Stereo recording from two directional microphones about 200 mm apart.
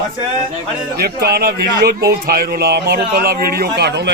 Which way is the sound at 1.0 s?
50° right (ahead or behind).